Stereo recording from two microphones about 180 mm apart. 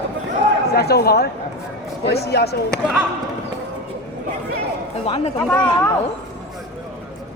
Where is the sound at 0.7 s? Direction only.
60° left (ahead or behind).